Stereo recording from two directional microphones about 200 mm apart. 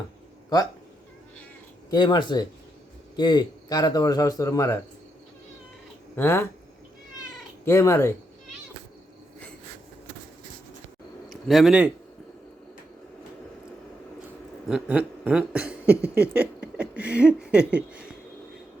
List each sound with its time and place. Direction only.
1.9 s a man's voice: 20° left (ahead or behind)
6.1 s speech: 10° left (ahead or behind)
7.6 s speech: 15° left (ahead or behind)
11.3 s speech: centre (ahead or behind)
14.7 s speech: 5° right (ahead or behind)
16.3 s a sound: 5° right (ahead or behind)